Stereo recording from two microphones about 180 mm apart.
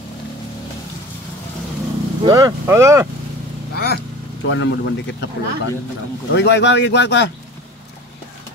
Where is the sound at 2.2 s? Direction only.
20° right (ahead or behind).